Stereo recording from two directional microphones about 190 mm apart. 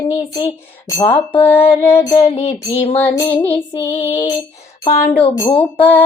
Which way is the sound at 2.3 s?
35° left (ahead or behind).